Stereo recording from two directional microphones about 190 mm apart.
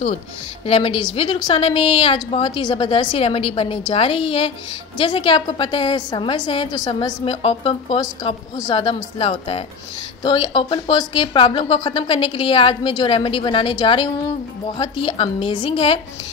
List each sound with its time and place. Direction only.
0.7 s a woman's voice: 30° left (ahead or behind)